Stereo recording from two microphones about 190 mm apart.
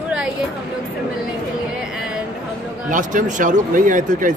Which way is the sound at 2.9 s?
45° right (ahead or behind).